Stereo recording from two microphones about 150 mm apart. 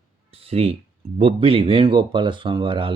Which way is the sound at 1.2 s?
40° right (ahead or behind).